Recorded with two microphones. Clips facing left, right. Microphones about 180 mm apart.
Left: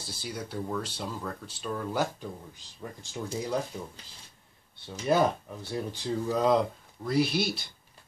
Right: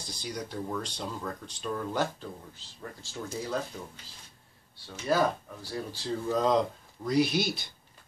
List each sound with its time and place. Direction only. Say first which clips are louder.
0.0 s speech: even; 5° left (ahead or behind)
5.0 s speech: left 2 dB; 20° left (ahead or behind)
6.2 s speech: left 1 dB; 10° left (ahead or behind)